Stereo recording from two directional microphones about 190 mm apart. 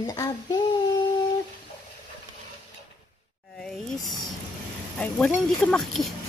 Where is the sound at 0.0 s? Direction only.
20° left (ahead or behind).